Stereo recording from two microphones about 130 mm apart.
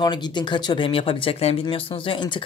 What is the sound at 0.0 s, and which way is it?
Speech, 35° left (ahead or behind).